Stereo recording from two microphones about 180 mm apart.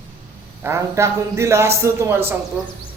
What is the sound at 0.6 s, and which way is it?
Speech, 15° right (ahead or behind).